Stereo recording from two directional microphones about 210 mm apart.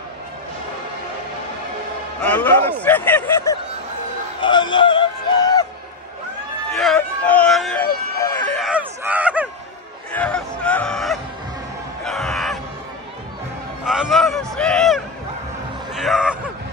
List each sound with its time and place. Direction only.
2.2 s speech: 10° left (ahead or behind)
4.4 s music: 20° left (ahead or behind)
6.7 s a sound: centre (ahead or behind)
10.1 s music: 5° left (ahead or behind)
12.0 s crowd: centre (ahead or behind)
13.8 s a sound: centre (ahead or behind)